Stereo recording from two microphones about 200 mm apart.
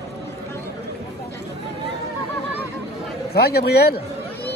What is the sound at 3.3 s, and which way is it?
A man's voice, 55° left (ahead or behind).